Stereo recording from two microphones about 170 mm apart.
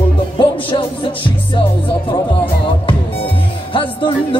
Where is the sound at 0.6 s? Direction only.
30° left (ahead or behind).